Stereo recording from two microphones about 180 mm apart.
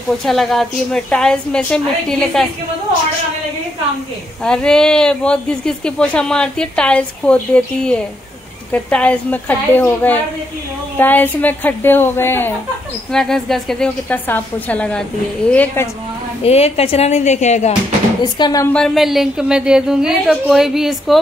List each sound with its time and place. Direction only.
0.2 s speech: centre (ahead or behind)
4.5 s a woman's voice: 5° left (ahead or behind)
16.4 s a woman's voice: 35° left (ahead or behind)
18.2 s speech: 20° left (ahead or behind)
18.7 s speech: centre (ahead or behind)